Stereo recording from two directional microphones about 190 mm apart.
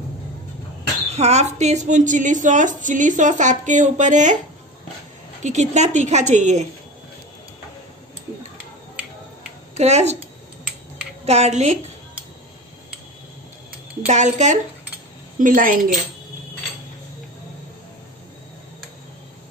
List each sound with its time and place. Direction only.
1.1 s a woman's voice: 35° right (ahead or behind)
5.4 s a woman's voice: 40° right (ahead or behind)
9.8 s a woman's voice: 35° right (ahead or behind)
11.2 s a woman's voice: 35° right (ahead or behind)
14.0 s a woman's voice: 40° right (ahead or behind)